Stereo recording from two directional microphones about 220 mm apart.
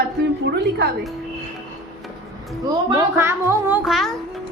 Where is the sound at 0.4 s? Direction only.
50° right (ahead or behind).